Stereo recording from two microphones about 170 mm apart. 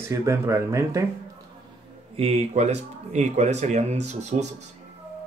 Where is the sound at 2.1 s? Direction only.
35° right (ahead or behind).